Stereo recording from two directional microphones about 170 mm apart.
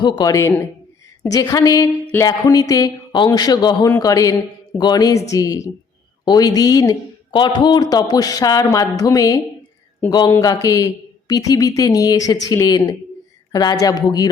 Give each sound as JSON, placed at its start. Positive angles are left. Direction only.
{"t": 0.0, "sound": "a man's voice", "side_deg": 20}